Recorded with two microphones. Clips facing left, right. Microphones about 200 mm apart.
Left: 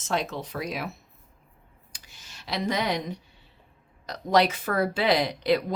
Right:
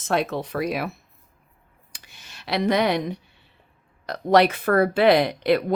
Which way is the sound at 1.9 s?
60° right (ahead or behind).